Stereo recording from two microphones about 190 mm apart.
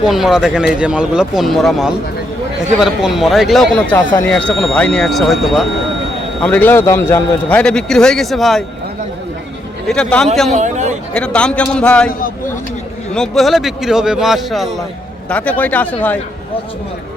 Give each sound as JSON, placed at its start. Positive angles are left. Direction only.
{"t": 0.0, "sound": "a man's voice", "side_deg": 0}
{"t": 3.9, "sound": "speech", "side_deg": 15}
{"t": 4.3, "sound": "a man's voice", "side_deg": 5}
{"t": 9.9, "sound": "a man's voice", "side_deg": 5}
{"t": 10.5, "sound": "speech", "side_deg": -40}
{"t": 11.1, "sound": "a man's voice", "side_deg": 5}
{"t": 13.1, "sound": "a man's voice", "side_deg": 0}